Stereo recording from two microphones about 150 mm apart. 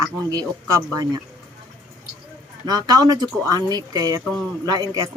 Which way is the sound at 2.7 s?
25° right (ahead or behind).